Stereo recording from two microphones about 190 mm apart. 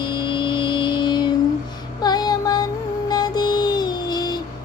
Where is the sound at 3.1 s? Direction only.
20° left (ahead or behind).